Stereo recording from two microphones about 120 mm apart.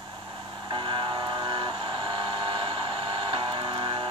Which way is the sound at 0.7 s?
45° right (ahead or behind).